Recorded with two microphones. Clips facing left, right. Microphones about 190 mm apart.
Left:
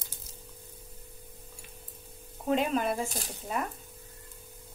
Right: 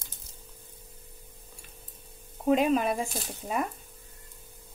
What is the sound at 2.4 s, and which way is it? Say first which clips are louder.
Speech: right 4 dB; 15° right (ahead or behind).